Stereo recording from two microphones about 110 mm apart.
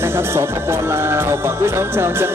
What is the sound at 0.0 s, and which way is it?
Music, 25° right (ahead or behind).